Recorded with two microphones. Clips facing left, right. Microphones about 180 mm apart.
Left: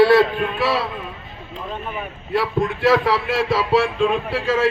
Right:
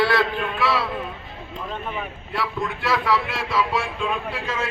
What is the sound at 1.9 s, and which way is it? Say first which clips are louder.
A man's voice: left 6 dB; 30° left (ahead or behind).